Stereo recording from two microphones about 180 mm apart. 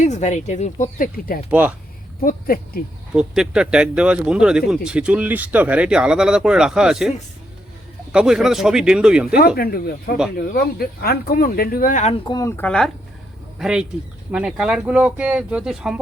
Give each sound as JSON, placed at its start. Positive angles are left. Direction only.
{"t": 0.0, "sound": "speech", "side_deg": 40}
{"t": 1.5, "sound": "speech", "side_deg": -10}
{"t": 2.2, "sound": "speech", "side_deg": 55}
{"t": 3.1, "sound": "speech", "side_deg": -5}
{"t": 8.1, "sound": "speech", "side_deg": -5}
{"t": 9.6, "sound": "speech", "side_deg": 55}
{"t": 12.2, "sound": "speech", "side_deg": 20}